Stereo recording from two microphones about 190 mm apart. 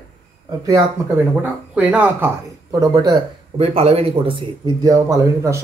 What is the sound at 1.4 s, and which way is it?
Speech, 5° right (ahead or behind).